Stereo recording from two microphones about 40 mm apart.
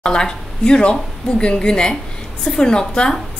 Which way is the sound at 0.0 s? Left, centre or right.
Centre.